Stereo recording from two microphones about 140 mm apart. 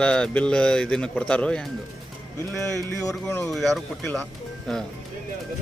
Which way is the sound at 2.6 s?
20° left (ahead or behind).